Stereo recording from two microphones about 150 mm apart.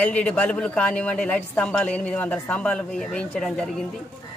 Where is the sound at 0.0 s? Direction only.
10° left (ahead or behind).